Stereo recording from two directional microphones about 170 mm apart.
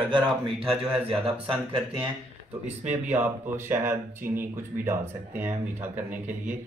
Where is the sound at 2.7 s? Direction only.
45° right (ahead or behind).